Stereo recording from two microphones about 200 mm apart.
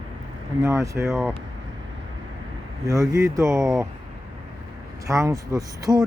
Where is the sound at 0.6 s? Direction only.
15° right (ahead or behind).